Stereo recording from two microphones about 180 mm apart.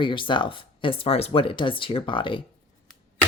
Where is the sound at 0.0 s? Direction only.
25° left (ahead or behind).